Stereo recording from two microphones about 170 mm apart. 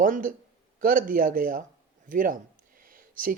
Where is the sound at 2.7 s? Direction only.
55° right (ahead or behind).